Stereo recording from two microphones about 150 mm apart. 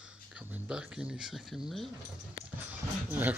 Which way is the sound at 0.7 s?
5° right (ahead or behind).